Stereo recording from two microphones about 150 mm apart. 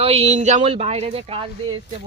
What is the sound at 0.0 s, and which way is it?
Speech, 45° right (ahead or behind).